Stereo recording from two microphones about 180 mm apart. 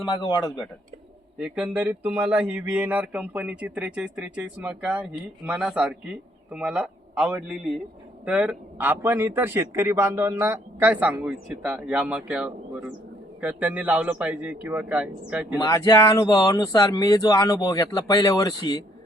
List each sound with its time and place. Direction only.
0.0 s speech: 25° left (ahead or behind)
1.4 s a man's voice: 5° right (ahead or behind)
15.6 s speech: 20° left (ahead or behind)